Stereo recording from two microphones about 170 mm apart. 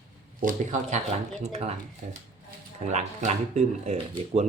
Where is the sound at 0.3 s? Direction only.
50° right (ahead or behind).